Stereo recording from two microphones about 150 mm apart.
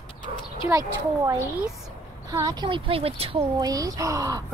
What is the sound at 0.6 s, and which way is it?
Speech, 20° right (ahead or behind).